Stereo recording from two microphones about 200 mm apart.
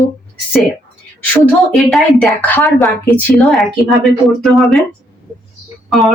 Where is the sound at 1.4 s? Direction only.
Centre (ahead or behind).